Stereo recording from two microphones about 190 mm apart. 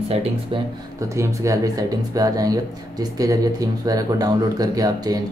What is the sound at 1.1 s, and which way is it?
Speech, 15° right (ahead or behind).